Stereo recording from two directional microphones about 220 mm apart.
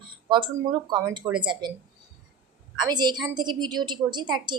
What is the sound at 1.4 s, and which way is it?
Speech, 20° right (ahead or behind).